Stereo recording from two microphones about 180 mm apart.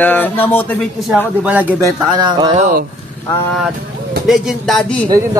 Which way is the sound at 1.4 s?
10° right (ahead or behind).